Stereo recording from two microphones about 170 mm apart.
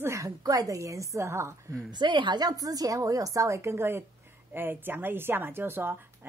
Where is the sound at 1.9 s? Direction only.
25° right (ahead or behind).